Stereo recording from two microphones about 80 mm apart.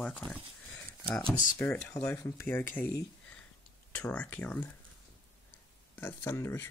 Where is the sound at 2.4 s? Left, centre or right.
Left.